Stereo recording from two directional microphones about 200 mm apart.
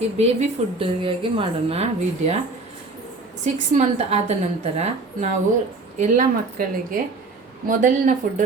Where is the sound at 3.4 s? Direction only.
35° right (ahead or behind).